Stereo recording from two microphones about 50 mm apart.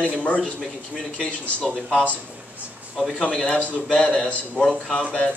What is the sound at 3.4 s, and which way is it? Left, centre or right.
A man's voice, left.